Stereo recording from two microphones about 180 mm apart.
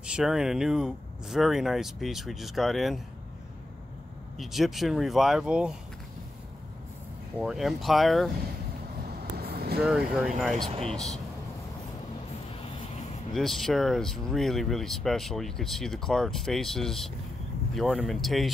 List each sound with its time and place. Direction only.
0.0 s speech: 5° right (ahead or behind)
4.4 s speech: centre (ahead or behind)
7.3 s speech: centre (ahead or behind)
9.4 s vehicle: 60° right (ahead or behind)
9.8 s speech: 5° right (ahead or behind)
12.5 s vehicle: 40° left (ahead or behind)
13.3 s speech: centre (ahead or behind)